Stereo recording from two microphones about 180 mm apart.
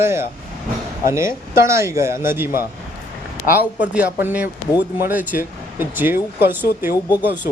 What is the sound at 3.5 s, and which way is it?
Speech, 10° right (ahead or behind).